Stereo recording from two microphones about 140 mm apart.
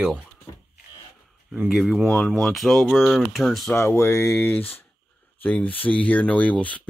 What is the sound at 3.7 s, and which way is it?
Speech, 20° left (ahead or behind).